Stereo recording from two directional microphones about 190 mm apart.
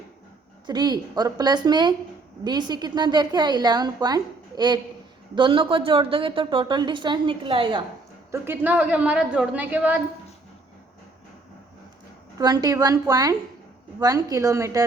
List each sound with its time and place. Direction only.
0.7 s a woman's voice: 20° right (ahead or behind)
8.3 s a woman's voice: 10° right (ahead or behind)
12.4 s a woman's voice: 20° right (ahead or behind)